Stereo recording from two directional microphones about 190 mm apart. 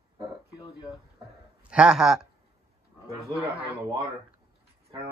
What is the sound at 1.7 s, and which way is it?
Speech, 5° right (ahead or behind).